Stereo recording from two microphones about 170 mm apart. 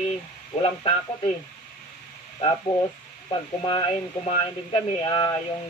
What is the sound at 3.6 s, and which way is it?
Speech, 30° left (ahead or behind).